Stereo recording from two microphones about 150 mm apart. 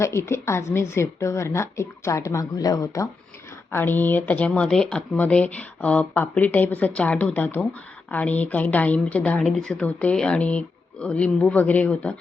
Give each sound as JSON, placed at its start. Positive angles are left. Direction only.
{"t": 0.0, "sound": "a woman's voice", "side_deg": 20}